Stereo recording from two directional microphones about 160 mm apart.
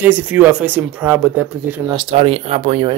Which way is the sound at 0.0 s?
10° right (ahead or behind).